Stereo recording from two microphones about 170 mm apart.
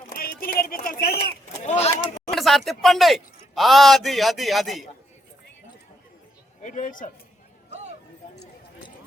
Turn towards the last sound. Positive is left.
turn(degrees=50)  # may be behind; listen again after turning